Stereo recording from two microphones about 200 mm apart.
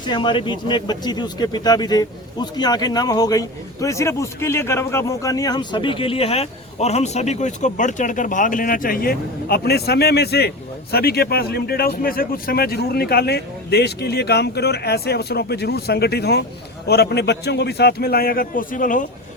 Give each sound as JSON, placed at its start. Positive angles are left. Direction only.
{"t": 0.0, "sound": "speech", "side_deg": 25}